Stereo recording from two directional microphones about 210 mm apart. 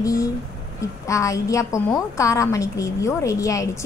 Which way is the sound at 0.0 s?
15° left (ahead or behind).